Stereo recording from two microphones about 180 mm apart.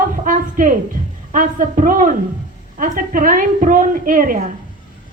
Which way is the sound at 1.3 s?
45° right (ahead or behind).